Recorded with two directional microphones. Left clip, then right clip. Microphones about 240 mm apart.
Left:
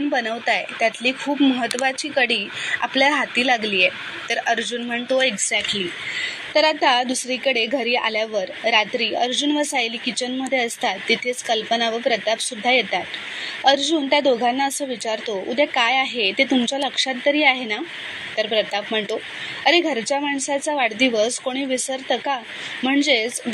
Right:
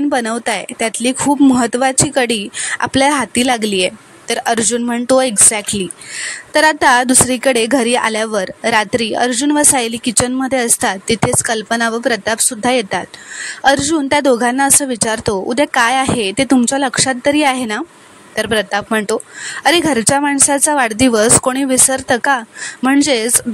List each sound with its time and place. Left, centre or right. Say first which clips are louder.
0.1 s a woman's voice: right 4 dB; right